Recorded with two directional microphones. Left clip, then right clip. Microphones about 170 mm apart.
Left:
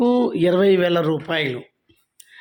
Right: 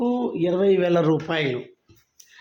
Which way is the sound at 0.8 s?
5° left (ahead or behind).